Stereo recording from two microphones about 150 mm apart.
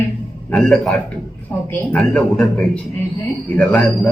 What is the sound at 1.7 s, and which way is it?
Speech, 10° left (ahead or behind).